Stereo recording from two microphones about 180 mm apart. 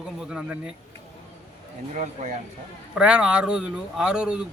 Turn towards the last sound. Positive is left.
turn(degrees=-5)  # may be behind; listen again after turning